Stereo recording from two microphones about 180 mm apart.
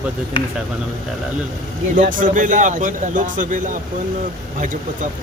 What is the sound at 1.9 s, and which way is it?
A man's voice, 45° right (ahead or behind).